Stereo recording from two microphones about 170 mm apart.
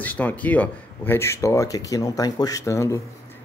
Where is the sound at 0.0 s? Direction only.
10° left (ahead or behind).